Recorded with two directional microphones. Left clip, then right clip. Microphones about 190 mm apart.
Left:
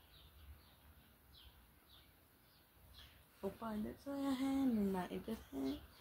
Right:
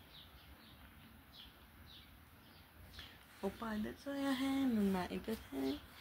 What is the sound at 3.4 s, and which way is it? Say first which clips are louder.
Speech: right 3 dB; 15° right (ahead or behind).